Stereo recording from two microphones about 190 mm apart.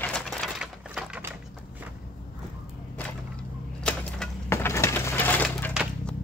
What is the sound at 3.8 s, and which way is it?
Wood, 10° left (ahead or behind).